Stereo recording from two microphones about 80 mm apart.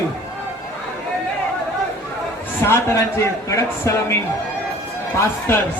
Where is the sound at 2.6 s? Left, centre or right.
Left.